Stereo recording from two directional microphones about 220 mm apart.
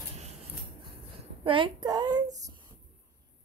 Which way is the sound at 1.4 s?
25° right (ahead or behind).